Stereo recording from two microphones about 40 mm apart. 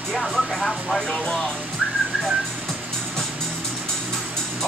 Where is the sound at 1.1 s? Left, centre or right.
Centre.